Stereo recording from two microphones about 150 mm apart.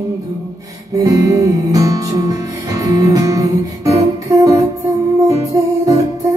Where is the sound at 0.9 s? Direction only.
25° right (ahead or behind).